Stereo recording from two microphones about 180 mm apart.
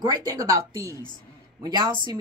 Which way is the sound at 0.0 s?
20° right (ahead or behind).